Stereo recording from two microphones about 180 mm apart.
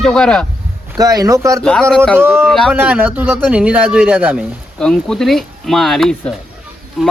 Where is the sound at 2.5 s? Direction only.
Centre (ahead or behind).